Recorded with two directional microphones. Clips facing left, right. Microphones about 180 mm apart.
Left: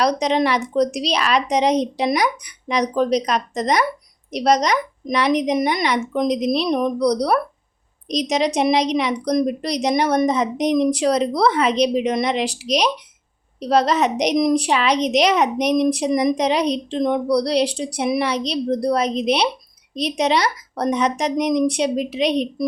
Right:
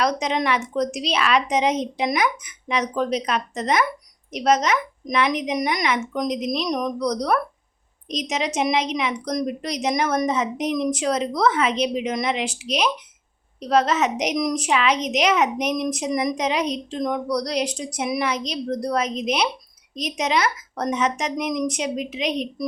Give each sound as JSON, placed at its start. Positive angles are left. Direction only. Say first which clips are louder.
{"t": 0.0, "sound": "a woman's voice", "louder": "left 4 dB", "side_deg": 35}